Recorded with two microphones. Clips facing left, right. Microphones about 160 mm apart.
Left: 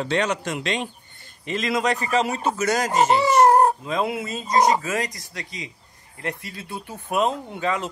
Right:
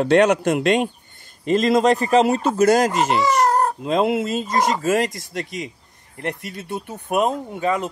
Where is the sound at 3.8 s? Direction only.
65° right (ahead or behind).